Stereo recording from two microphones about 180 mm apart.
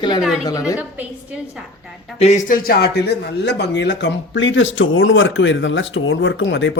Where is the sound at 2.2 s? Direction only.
40° left (ahead or behind); by 6.8 s 90° left.